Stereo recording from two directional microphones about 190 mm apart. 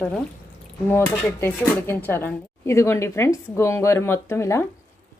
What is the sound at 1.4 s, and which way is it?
Speech, 15° left (ahead or behind).